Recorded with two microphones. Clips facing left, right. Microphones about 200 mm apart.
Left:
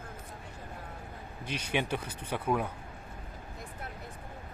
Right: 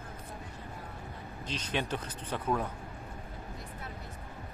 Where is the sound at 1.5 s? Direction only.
10° left (ahead or behind).